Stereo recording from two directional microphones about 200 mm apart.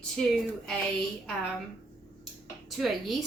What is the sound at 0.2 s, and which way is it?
Speech, 5° left (ahead or behind).